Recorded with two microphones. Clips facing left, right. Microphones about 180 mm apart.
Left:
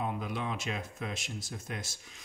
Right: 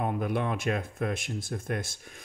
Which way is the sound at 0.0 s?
55° right (ahead or behind).